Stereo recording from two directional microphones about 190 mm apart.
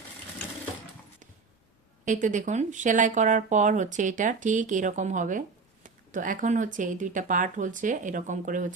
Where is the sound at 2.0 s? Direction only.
40° right (ahead or behind).